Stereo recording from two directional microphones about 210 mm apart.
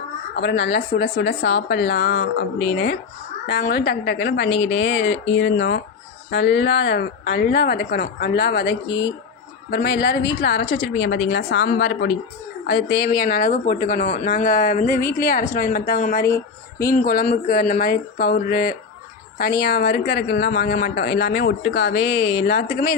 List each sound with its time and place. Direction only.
0.3 s speech: 55° left (ahead or behind)
4.4 s a woman's voice: 25° left (ahead or behind)
4.7 s speech: 55° left (ahead or behind)
8.9 s a woman's voice: 20° left (ahead or behind)
9.6 s speech: 50° left (ahead or behind)
16.2 s speech: 15° left (ahead or behind)
16.9 s speech: 45° left (ahead or behind)